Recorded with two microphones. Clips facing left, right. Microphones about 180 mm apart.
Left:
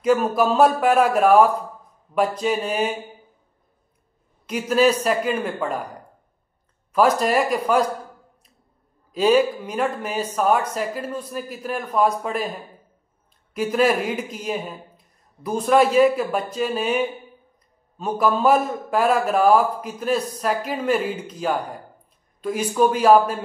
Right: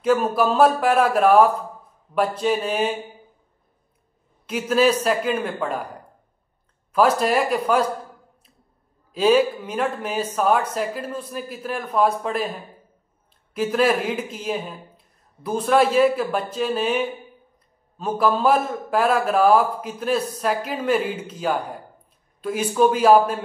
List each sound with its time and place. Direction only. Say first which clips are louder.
0.0 s speech: left 1 dB; 5° right (ahead or behind)
0.7 s speech: left 1 dB; 5° left (ahead or behind)
4.5 s speech: even; centre (ahead or behind)
6.9 s speech: even; 5° right (ahead or behind)
9.1 s speech: even; centre (ahead or behind)
13.7 s speech: left 1 dB; 5° left (ahead or behind)